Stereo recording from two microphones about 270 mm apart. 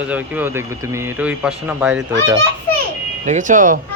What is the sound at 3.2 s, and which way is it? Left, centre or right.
Speech, right.